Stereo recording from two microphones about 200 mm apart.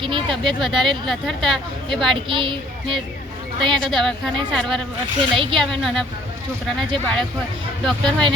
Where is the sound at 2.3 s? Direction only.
25° right (ahead or behind).